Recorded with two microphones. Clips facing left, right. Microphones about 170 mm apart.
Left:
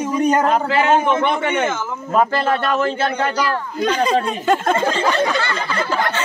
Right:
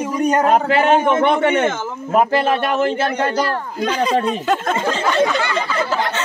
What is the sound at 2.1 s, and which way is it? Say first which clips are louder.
Speech: right 2 dB; 15° right (ahead or behind).